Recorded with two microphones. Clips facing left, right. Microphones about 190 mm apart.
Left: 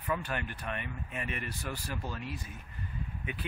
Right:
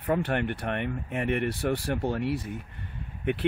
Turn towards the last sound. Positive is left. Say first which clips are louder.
# right 12 dB
turn(degrees=-65)  # may be behind; listen again after turning